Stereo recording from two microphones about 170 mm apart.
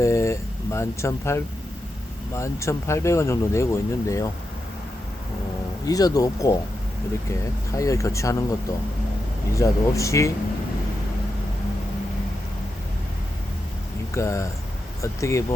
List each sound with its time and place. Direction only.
0.0 s speech: 15° left (ahead or behind)
5.8 s speech: 20° left (ahead or behind)
9.5 s speech: 20° left (ahead or behind)
14.1 s speech: 15° left (ahead or behind)